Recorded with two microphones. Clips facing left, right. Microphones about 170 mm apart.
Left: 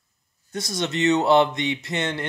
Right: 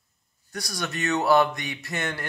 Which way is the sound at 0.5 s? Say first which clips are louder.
Left 6 dB; 20° left (ahead or behind).